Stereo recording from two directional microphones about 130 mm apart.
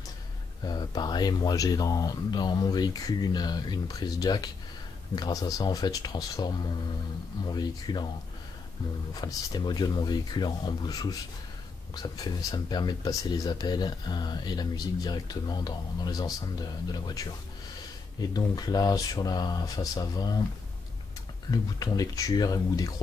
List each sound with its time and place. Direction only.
0.7 s speech: 30° left (ahead or behind)
9.1 s speech: 30° left (ahead or behind)
21.5 s speech: 30° left (ahead or behind)